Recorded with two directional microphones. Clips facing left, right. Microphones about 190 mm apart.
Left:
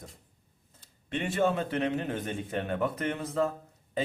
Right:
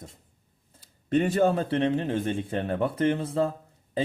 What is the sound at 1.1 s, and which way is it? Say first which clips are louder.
Speech: right 6 dB; 40° right (ahead or behind).